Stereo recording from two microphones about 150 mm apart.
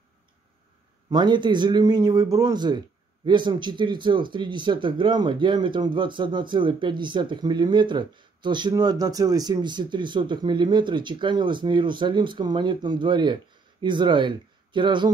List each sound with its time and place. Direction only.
1.1 s speech: 30° right (ahead or behind)